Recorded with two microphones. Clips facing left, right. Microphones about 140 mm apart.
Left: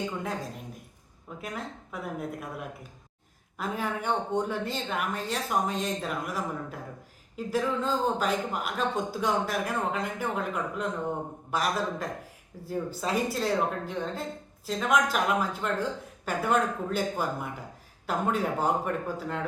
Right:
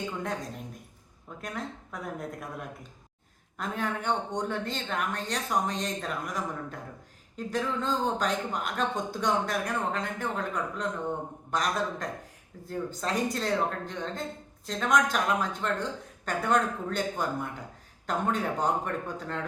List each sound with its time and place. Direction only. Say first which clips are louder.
0.2 s speech: even; 5° left (ahead or behind)